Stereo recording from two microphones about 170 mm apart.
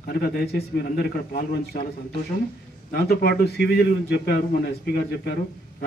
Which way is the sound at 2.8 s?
65° left (ahead or behind).